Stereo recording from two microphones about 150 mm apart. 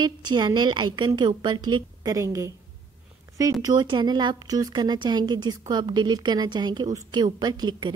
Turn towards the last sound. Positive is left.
turn(degrees=-30)  # may be behind; listen again after turning